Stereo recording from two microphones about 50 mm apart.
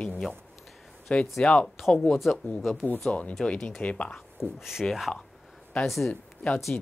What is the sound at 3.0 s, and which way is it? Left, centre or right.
Speech, left.